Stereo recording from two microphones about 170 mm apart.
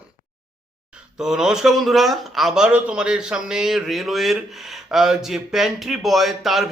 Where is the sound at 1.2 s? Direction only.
5° right (ahead or behind).